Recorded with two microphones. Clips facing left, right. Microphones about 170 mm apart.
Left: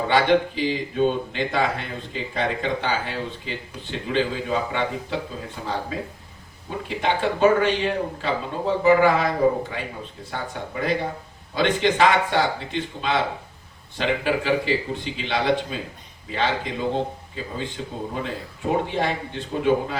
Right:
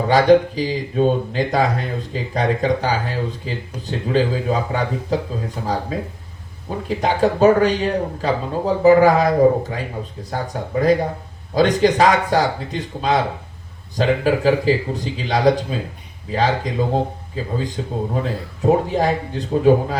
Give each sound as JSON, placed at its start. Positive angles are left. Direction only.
{"t": 0.1, "sound": "speech", "side_deg": -40}
{"t": 6.8, "sound": "speech", "side_deg": -40}